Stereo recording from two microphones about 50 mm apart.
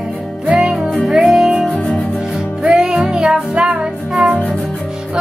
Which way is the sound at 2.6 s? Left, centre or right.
Centre.